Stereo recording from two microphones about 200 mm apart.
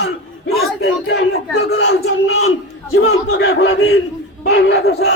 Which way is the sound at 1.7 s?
70° left (ahead or behind).